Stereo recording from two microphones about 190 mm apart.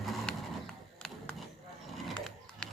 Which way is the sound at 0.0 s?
Centre (ahead or behind).